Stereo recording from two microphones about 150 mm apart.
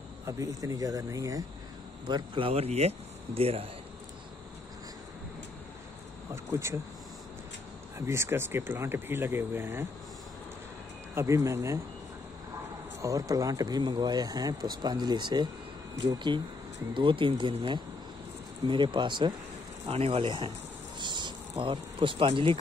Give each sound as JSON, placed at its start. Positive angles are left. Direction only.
{"t": 0.3, "sound": "speech", "side_deg": -20}
{"t": 6.3, "sound": "speech", "side_deg": -20}
{"t": 8.1, "sound": "speech", "side_deg": -15}
{"t": 11.1, "sound": "speech", "side_deg": -20}
{"t": 13.0, "sound": "speech", "side_deg": -20}
{"t": 21.0, "sound": "a sound", "side_deg": -30}